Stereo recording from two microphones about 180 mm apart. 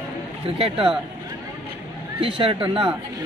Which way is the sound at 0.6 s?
30° right (ahead or behind).